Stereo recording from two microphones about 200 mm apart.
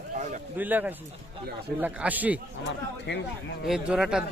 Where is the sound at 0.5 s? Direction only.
10° right (ahead or behind).